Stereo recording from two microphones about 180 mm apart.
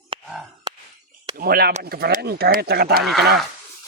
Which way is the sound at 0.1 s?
30° right (ahead or behind).